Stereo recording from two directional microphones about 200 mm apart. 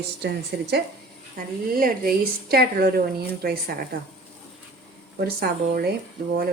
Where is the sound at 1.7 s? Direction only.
45° right (ahead or behind).